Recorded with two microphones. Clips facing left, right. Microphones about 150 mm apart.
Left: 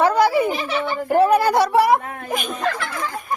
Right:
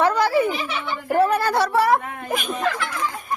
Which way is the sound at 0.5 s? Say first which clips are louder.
Left 4 dB; 45° left (ahead or behind).